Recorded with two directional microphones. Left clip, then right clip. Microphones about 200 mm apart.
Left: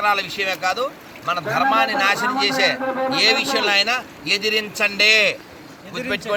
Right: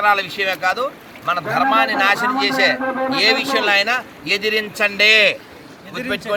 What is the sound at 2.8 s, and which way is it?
Speech, 30° right (ahead or behind).